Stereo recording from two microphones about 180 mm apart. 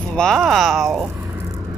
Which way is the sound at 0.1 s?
5° left (ahead or behind).